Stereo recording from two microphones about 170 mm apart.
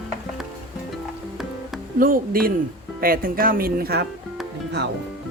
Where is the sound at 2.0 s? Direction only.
55° right (ahead or behind).